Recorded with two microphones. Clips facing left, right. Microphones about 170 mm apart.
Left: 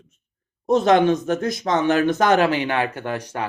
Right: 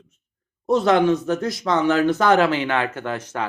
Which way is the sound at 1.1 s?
55° left (ahead or behind).